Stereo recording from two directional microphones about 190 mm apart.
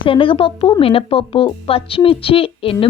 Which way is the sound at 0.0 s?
25° left (ahead or behind).